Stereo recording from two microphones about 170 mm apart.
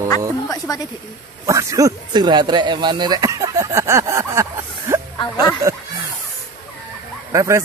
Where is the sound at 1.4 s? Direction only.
20° right (ahead or behind).